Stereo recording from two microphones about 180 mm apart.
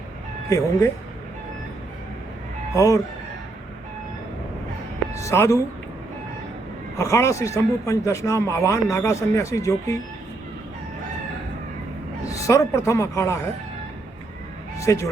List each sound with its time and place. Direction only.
0.5 s speech: 20° left (ahead or behind)
2.7 s speech: 20° left (ahead or behind)
5.1 s speech: 15° left (ahead or behind)
7.0 s a man's voice: 15° left (ahead or behind)
12.3 s a man's voice: 15° left (ahead or behind)
14.8 s speech: 15° left (ahead or behind)